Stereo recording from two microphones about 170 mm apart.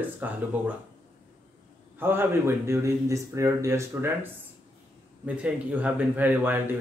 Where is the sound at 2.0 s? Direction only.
15° right (ahead or behind).